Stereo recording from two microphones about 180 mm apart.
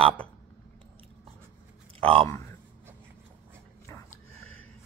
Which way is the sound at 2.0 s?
30° right (ahead or behind).